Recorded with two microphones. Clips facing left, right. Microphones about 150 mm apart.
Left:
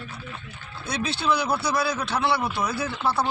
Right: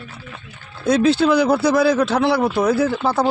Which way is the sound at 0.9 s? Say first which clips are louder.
Right 11 dB; 55° right (ahead or behind).